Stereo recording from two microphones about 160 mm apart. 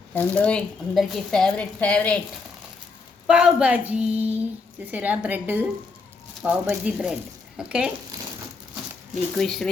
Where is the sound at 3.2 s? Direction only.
5° right (ahead or behind).